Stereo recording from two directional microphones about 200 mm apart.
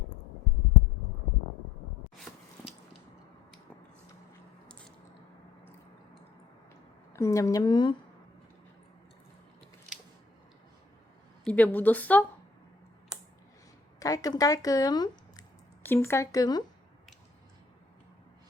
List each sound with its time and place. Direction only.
7.1 s a woman's voice: 15° left (ahead or behind)
11.4 s a woman's voice: 5° left (ahead or behind)
14.0 s speech: 15° left (ahead or behind)